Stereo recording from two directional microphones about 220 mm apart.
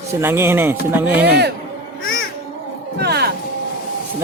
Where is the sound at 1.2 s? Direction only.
50° right (ahead or behind).